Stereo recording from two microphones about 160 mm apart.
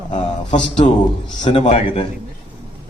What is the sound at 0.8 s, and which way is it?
A man's voice, 40° left (ahead or behind).